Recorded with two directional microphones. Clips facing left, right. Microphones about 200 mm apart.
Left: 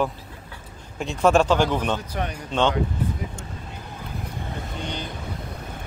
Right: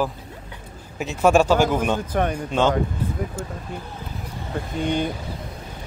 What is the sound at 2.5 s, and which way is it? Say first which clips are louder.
Speech: right 1 dB; 10° right (ahead or behind).